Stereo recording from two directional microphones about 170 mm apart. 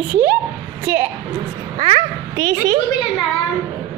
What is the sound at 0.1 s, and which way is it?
A woman's voice, 10° right (ahead or behind).